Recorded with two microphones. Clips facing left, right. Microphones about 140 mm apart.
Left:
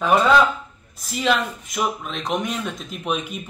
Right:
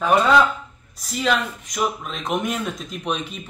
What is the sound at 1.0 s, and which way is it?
Speech, centre (ahead or behind).